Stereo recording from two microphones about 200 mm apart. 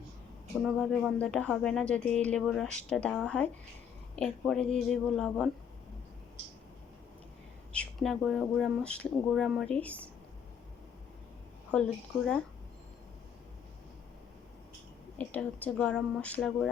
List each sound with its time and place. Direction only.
0.6 s speech: centre (ahead or behind)
7.7 s speech: 5° left (ahead or behind)
11.7 s speech: 5° left (ahead or behind)
15.2 s speech: 10° left (ahead or behind)